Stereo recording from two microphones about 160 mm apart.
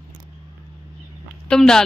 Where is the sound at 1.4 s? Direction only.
5° left (ahead or behind).